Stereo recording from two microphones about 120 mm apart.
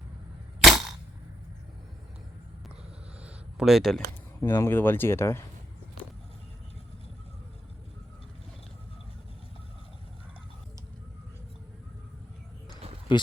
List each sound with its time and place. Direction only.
0.6 s cap gun: centre (ahead or behind)
3.2 s a sound: 5° right (ahead or behind)
4.0 s speech: 25° left (ahead or behind)